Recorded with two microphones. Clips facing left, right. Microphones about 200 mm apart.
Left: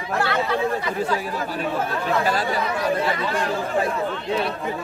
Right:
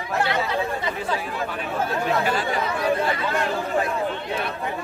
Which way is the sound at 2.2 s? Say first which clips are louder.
Left 1 dB; 40° left (ahead or behind).